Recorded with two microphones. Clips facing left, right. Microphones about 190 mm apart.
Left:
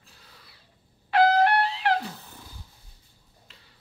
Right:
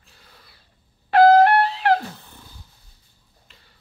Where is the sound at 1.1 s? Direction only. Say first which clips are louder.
Right 7 dB; 45° right (ahead or behind).